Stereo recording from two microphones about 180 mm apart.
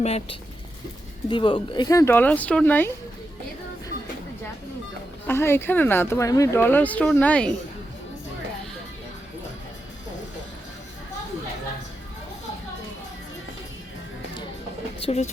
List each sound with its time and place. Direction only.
0.0 s speech: 35° left (ahead or behind); by 2.9 s 10° left (ahead or behind)
5.3 s speech: 15° left (ahead or behind)
15.0 s speech: 35° left (ahead or behind)